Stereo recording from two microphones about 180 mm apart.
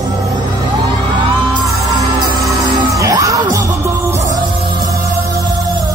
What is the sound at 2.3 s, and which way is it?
Music, 15° right (ahead or behind).